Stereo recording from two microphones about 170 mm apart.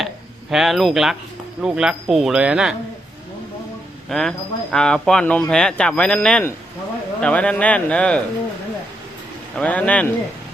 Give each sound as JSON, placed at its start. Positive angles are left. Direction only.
{"t": 0.5, "sound": "speech", "side_deg": 0}
{"t": 4.1, "sound": "speech", "side_deg": 5}
{"t": 9.6, "sound": "speech", "side_deg": 10}